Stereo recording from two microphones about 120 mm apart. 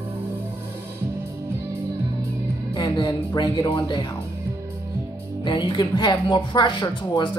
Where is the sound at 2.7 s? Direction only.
35° left (ahead or behind).